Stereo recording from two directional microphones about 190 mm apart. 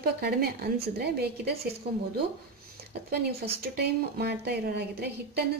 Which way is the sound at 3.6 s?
55° right (ahead or behind).